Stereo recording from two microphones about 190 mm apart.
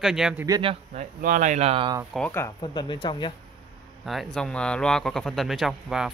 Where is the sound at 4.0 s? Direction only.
Centre (ahead or behind).